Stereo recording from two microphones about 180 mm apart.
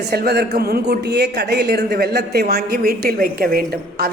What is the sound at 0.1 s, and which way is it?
A man's voice, 65° right (ahead or behind).